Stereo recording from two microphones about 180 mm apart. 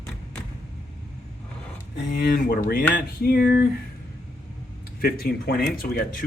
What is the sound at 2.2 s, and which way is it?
Speech, 50° left (ahead or behind).